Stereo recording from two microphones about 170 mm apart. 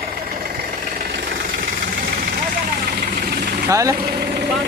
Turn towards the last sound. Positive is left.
turn(degrees=-20)  # may be behind; listen again after turning